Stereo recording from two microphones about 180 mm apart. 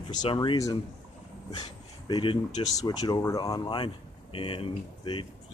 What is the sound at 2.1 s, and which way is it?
Speech, 25° left (ahead or behind).